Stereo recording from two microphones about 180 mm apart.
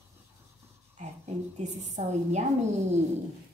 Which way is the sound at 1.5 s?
40° right (ahead or behind).